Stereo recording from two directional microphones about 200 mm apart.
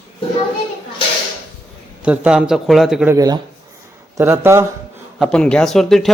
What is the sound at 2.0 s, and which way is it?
A man's voice, 5° right (ahead or behind).